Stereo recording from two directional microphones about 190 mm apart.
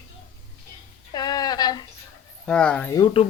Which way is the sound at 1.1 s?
20° left (ahead or behind).